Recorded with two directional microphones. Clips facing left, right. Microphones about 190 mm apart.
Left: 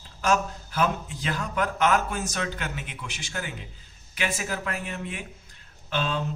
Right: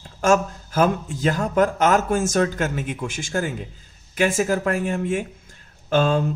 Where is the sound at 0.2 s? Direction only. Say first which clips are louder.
Right 6 dB; 45° right (ahead or behind).